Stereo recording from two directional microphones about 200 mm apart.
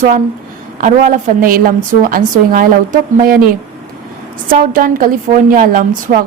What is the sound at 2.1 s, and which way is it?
A woman's voice, 45° right (ahead or behind).